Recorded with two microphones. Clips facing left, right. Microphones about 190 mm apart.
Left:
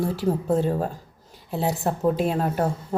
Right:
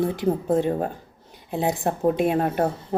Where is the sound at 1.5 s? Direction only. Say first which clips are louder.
Right 1 dB; 20° right (ahead or behind).